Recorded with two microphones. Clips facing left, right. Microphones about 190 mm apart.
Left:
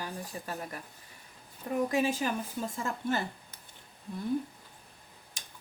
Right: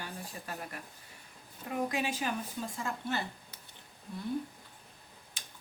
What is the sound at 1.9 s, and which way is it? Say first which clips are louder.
A woman's voice: left 5 dB; 45° left (ahead or behind).